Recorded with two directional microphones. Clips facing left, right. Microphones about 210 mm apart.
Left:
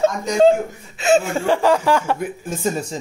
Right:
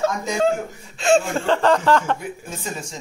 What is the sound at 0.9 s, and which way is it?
Speech, 5° left (ahead or behind).